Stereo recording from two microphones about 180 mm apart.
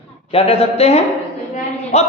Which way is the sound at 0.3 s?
35° left (ahead or behind).